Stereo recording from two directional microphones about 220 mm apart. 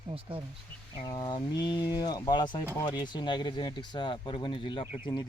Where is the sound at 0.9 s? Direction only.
20° left (ahead or behind).